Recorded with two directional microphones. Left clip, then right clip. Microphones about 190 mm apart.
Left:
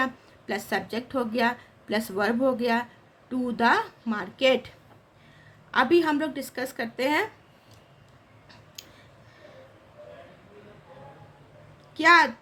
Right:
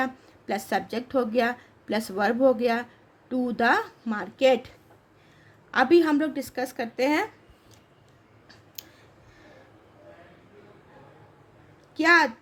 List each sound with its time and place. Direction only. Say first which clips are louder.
0.0 s speech: left 1 dB; 25° right (ahead or behind)
5.7 s speech: right 2 dB; 25° right (ahead or behind)
8.8 s a sound: right 1 dB; 25° right (ahead or behind)
11.9 s speech: left 1 dB; 25° right (ahead or behind)